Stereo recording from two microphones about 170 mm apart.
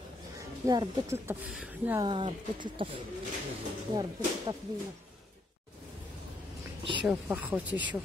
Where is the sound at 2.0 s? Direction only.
30° right (ahead or behind).